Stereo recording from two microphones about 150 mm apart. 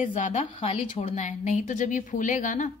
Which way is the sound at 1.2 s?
55° left (ahead or behind).